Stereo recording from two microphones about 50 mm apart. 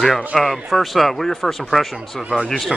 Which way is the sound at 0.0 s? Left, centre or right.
Centre.